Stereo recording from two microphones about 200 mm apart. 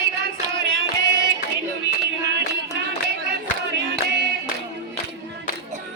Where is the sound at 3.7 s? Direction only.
60° right (ahead or behind).